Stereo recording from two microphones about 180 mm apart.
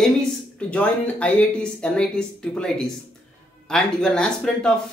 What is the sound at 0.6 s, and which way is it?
Speech, 5° left (ahead or behind).